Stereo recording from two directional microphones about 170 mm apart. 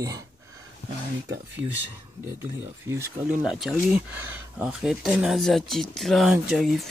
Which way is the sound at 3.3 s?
5° right (ahead or behind).